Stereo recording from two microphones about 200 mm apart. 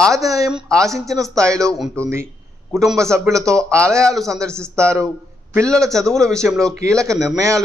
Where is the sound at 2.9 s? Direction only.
15° right (ahead or behind).